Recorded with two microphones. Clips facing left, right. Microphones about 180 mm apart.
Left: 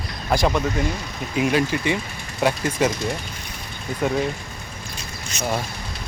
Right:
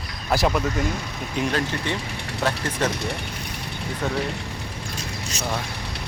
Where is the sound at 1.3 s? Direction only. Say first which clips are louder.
Left 5 dB; 10° left (ahead or behind).